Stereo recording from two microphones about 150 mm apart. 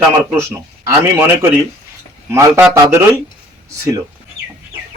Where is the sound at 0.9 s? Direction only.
20° right (ahead or behind).